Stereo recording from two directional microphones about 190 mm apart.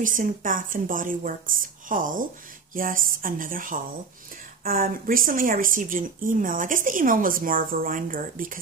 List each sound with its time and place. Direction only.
0.0 s a woman's voice: 45° right (ahead or behind)